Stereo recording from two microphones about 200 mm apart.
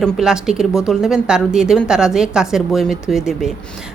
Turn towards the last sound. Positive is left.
turn(degrees=0)  # may be behind; listen again after turning